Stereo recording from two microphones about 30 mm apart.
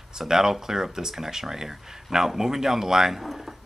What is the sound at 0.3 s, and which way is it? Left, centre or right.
Speech, centre.